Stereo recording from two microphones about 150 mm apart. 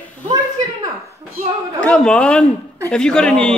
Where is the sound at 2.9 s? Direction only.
5° left (ahead or behind).